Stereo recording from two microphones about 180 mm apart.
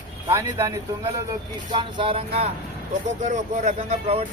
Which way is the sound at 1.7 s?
30° right (ahead or behind).